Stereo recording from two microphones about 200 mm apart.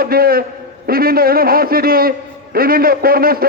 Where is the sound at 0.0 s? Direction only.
50° right (ahead or behind).